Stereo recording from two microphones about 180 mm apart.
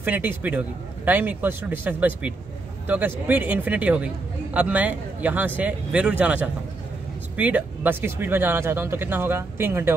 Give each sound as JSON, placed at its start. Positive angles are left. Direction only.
{"t": 0.0, "sound": "speech", "side_deg": -10}